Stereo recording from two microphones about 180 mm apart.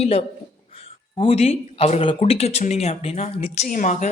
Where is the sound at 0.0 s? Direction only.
35° left (ahead or behind).